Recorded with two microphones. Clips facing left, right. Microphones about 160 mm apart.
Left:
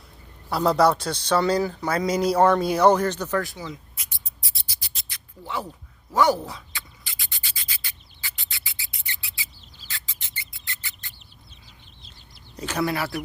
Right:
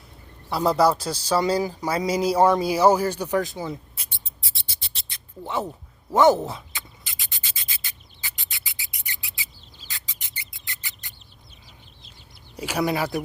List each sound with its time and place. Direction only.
0.5 s a man's voice: 5° right (ahead or behind); by 5.6 s 20° right (ahead or behind)
6.1 s rub: 20° right (ahead or behind)
9.9 s music: 20° right (ahead or behind)
12.5 s speech: 10° right (ahead or behind)